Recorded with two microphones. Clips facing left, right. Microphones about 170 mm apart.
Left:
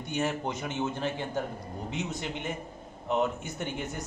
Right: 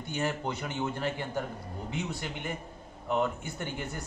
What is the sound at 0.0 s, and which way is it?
A man's voice, 20° left (ahead or behind).